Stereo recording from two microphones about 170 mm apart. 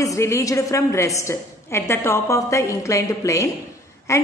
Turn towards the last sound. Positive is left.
turn(degrees=15)  # may be behind; listen again after turning